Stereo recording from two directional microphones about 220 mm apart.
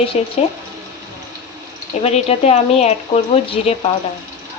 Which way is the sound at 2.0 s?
30° left (ahead or behind).